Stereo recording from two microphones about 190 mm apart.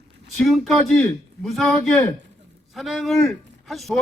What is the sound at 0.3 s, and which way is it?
A man's voice, centre (ahead or behind).